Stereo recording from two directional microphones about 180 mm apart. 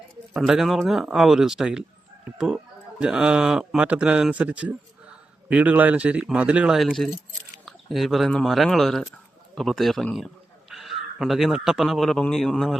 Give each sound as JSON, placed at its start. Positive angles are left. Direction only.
{"t": 0.3, "sound": "a man's voice", "side_deg": 0}
{"t": 3.0, "sound": "a man's voice", "side_deg": -5}